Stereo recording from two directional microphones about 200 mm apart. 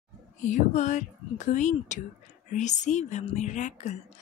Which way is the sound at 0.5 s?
35° left (ahead or behind).